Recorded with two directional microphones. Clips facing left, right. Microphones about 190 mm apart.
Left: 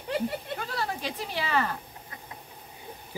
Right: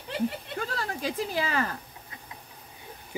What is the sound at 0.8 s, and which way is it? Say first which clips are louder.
Speech: right 2 dB; 45° right (ahead or behind).